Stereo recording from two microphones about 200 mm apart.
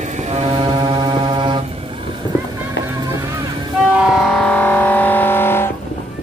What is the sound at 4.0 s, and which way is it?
Vehicle, centre (ahead or behind).